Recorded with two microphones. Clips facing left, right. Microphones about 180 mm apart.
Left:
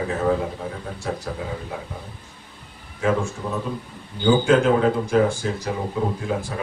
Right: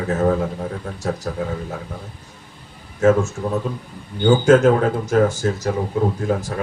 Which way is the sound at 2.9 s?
45° right (ahead or behind).